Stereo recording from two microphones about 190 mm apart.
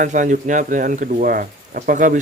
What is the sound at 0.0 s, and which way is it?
Speech, 40° right (ahead or behind).